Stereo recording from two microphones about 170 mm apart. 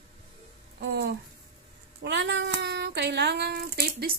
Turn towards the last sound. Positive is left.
turn(degrees=-60)  # may be behind; listen again after turning